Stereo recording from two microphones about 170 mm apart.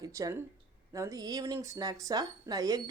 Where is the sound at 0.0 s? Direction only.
20° right (ahead or behind).